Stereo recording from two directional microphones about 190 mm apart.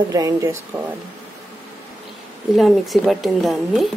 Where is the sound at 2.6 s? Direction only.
Centre (ahead or behind).